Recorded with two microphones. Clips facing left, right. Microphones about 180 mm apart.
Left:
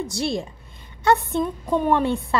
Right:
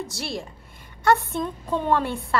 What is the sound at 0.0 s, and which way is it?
A woman's voice, 20° left (ahead or behind).